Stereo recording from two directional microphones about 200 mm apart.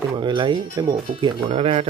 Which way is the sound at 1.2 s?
30° right (ahead or behind).